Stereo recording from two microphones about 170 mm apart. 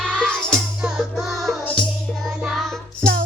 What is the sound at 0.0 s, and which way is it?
Music, 5° left (ahead or behind).